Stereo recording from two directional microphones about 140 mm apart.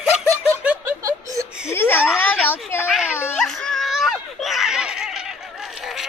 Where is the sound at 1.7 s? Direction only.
15° left (ahead or behind).